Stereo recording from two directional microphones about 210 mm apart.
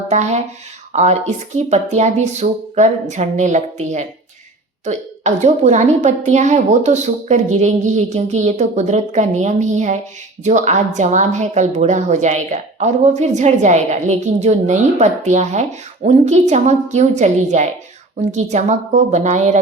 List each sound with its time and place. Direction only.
0.1 s a woman's voice: 35° right (ahead or behind)
1.5 s a woman's voice: 35° right (ahead or behind)